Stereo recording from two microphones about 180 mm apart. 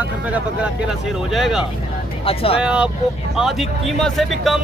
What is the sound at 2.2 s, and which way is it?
Speech, 30° left (ahead or behind).